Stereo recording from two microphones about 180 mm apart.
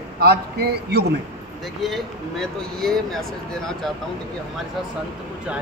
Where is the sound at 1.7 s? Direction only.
Centre (ahead or behind).